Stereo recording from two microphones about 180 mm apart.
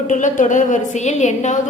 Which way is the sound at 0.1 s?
45° left (ahead or behind).